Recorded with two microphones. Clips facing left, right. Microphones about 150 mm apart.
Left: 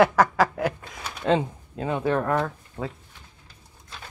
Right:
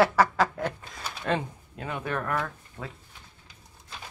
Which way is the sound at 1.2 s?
25° left (ahead or behind).